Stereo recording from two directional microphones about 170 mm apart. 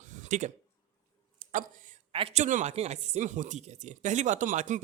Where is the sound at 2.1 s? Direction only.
40° right (ahead or behind).